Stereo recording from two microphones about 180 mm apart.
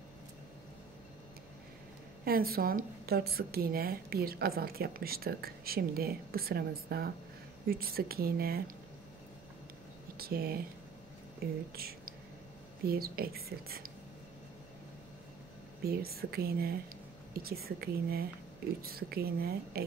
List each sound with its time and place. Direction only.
2.2 s a woman's voice: 55° right (ahead or behind)
10.1 s a woman's voice: 60° right (ahead or behind)
12.8 s a woman's voice: 55° right (ahead or behind)
15.8 s a woman's voice: 60° right (ahead or behind)